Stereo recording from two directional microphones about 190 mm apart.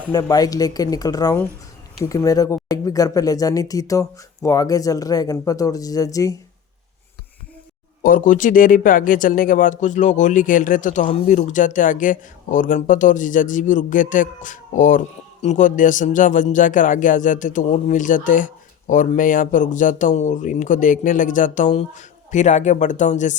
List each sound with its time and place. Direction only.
0.1 s speech: 20° left (ahead or behind)
8.0 s speech: 45° left (ahead or behind)